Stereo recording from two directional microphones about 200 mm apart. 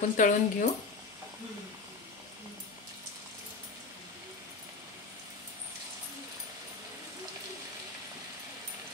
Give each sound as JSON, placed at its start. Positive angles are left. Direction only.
{"t": 0.0, "sound": "speech", "side_deg": 40}